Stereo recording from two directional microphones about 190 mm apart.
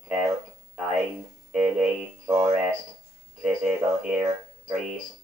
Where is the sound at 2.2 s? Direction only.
10° right (ahead or behind).